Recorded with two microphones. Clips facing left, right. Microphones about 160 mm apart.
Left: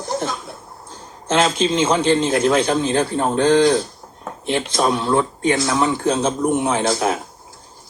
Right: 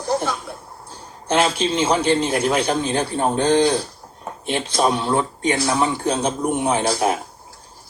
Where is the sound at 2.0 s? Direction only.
10° right (ahead or behind).